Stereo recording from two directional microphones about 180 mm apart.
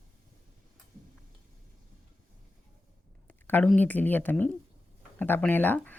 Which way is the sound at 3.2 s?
10° left (ahead or behind).